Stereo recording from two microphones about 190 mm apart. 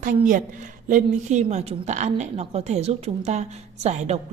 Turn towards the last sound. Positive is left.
turn(degrees=-35)  # may be behind; listen again after turning